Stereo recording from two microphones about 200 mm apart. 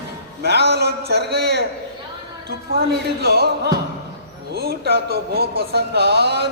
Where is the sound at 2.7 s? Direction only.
50° right (ahead or behind).